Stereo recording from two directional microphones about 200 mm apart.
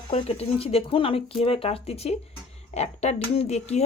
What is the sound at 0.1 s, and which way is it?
Speech, 30° left (ahead or behind).